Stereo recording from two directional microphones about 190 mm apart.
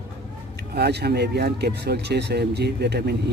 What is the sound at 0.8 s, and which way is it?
Speech, 60° right (ahead or behind).